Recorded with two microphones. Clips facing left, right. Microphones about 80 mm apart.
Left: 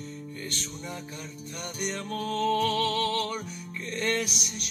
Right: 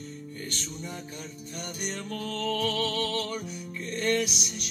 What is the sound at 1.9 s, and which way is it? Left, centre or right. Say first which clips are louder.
Music: left 6 dB; left.